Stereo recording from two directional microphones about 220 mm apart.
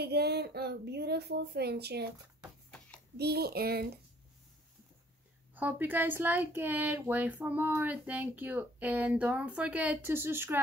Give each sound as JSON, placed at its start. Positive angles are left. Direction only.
{"t": 0.0, "sound": "a woman's voice", "side_deg": -45}
{"t": 3.2, "sound": "a woman's voice", "side_deg": -45}
{"t": 5.5, "sound": "speech", "side_deg": -10}